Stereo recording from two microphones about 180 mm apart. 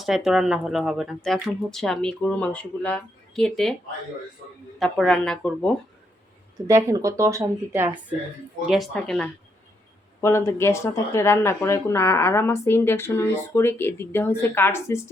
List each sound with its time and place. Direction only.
0.0 s speech: centre (ahead or behind)
4.8 s speech: 5° left (ahead or behind)
6.7 s a woman's voice: 15° right (ahead or behind)
8.7 s speech: centre (ahead or behind)
10.2 s speech: 15° left (ahead or behind)